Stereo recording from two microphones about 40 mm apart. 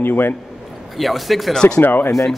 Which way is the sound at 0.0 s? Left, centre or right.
Left.